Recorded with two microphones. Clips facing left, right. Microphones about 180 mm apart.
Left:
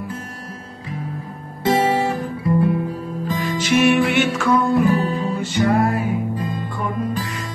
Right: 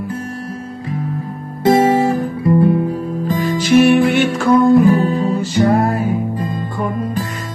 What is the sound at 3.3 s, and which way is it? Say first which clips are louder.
Music: right 5 dB; 45° right (ahead or behind).